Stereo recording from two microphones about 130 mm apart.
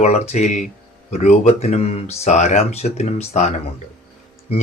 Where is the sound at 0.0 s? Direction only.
55° left (ahead or behind).